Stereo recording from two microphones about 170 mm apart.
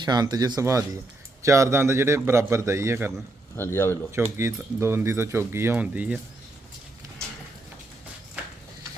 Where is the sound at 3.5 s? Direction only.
15° left (ahead or behind).